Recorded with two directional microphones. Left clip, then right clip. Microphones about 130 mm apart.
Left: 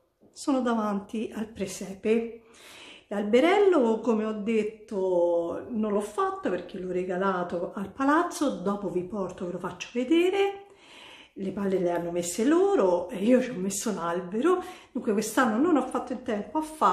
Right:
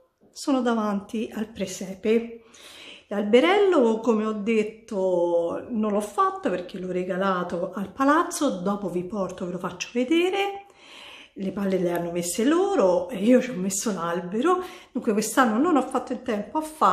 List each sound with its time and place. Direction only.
0.4 s speech: 25° right (ahead or behind)